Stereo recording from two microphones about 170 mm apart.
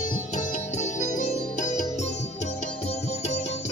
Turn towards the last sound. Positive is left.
turn(degrees=45)  # may be behind; listen again after turning